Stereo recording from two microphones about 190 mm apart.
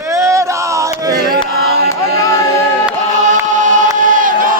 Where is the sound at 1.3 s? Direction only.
55° right (ahead or behind).